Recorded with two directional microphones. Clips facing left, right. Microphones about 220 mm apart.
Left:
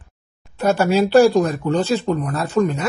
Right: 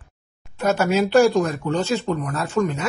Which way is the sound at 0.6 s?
30° left (ahead or behind).